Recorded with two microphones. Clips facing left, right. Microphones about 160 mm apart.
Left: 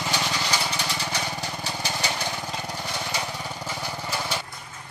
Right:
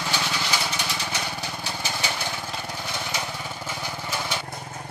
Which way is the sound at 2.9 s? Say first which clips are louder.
Even; 10° left (ahead or behind).